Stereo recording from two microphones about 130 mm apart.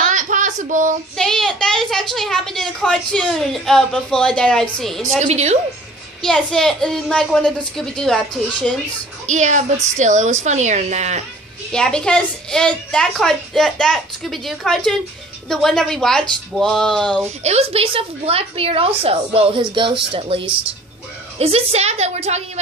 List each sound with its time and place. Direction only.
0.0 s a sound: 75° right (ahead or behind)
1.1 s a child's voice: 5° left (ahead or behind)
5.2 s a woman's voice: 55° right (ahead or behind)
6.2 s a child's voice: 5° left (ahead or behind)
9.2 s a woman's voice: 70° right (ahead or behind)
11.7 s a child's voice: 5° left (ahead or behind)
17.4 s a woman's voice: 55° right (ahead or behind)